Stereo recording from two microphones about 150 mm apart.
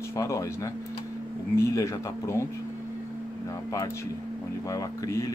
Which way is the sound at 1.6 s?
20° left (ahead or behind).